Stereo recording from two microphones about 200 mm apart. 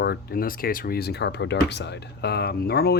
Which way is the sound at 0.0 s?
50° left (ahead or behind).